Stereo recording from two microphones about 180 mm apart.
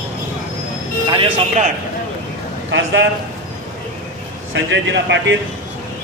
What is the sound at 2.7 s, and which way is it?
Speech, 90° right.